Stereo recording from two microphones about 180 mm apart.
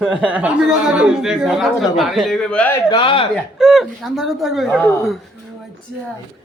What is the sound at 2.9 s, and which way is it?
Speech, 30° left (ahead or behind).